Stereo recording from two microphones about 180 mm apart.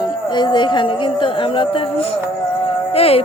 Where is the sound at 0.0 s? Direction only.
25° left (ahead or behind).